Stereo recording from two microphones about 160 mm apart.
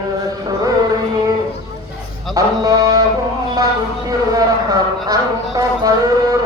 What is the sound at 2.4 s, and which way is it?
Music, 20° right (ahead or behind).